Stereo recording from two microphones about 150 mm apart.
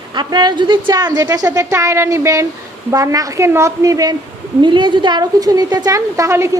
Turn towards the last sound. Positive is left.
turn(degrees=-20)  # may be behind; listen again after turning